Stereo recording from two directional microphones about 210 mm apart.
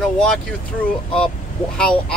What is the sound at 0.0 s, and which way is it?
Speech, 5° left (ahead or behind).